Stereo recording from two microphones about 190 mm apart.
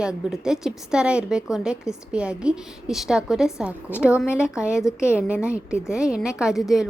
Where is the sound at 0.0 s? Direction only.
5° right (ahead or behind).